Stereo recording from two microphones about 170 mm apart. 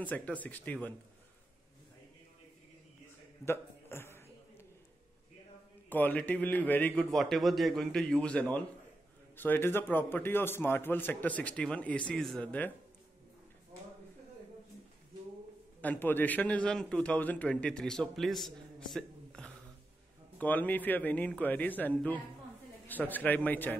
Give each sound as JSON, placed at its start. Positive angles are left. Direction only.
{"t": 0.0, "sound": "a man's voice", "side_deg": 10}
{"t": 3.4, "sound": "a sound", "side_deg": 15}
{"t": 5.9, "sound": "a man's voice", "side_deg": 10}
{"t": 15.8, "sound": "a man's voice", "side_deg": 10}
{"t": 18.9, "sound": "a sound", "side_deg": 5}
{"t": 20.3, "sound": "a man's voice", "side_deg": 10}